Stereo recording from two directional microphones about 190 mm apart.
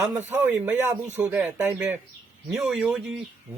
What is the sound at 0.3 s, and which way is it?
A man's voice, 10° right (ahead or behind).